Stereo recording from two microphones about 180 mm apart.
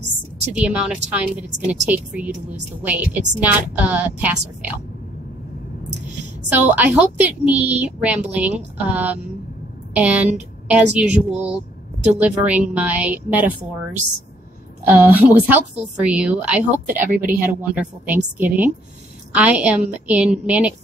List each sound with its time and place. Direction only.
0.6 s a woman's voice: 5° right (ahead or behind)
6.5 s a woman's voice: 10° right (ahead or behind)
14.9 s a woman's voice: 10° right (ahead or behind)
17.1 s a woman's voice: 50° right (ahead or behind)
17.6 s a woman's voice: 10° right (ahead or behind)